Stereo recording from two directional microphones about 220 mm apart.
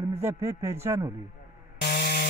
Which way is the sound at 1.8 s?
45° left (ahead or behind).